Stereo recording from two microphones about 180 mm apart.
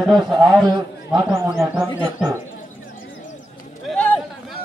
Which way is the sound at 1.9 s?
15° right (ahead or behind).